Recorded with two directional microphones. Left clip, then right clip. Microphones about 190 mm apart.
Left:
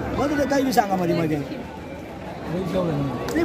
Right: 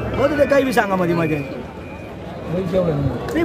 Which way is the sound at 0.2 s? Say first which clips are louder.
Right 7 dB; 5° right (ahead or behind).